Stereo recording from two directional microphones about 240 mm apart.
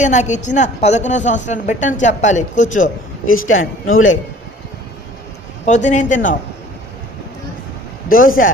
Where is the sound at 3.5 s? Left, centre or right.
Left.